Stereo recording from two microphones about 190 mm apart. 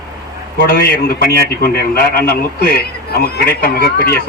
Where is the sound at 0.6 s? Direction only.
50° left (ahead or behind).